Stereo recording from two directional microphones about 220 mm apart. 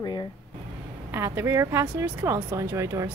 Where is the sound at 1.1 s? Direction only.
10° right (ahead or behind).